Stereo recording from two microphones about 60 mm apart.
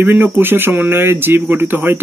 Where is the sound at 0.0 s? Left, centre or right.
Right.